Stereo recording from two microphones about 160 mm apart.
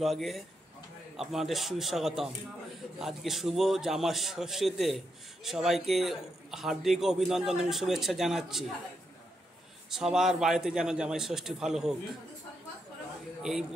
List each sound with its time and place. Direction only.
0.0 s a man's voice: centre (ahead or behind)
9.8 s a man's voice: 5° right (ahead or behind)
13.4 s a man's voice: 5° right (ahead or behind)